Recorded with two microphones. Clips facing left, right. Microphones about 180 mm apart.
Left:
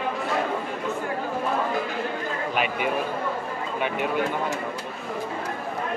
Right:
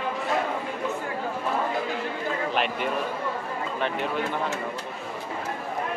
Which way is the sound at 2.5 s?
5° left (ahead or behind).